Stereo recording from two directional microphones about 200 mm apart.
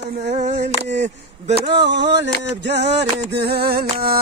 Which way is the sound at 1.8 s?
60° right (ahead or behind).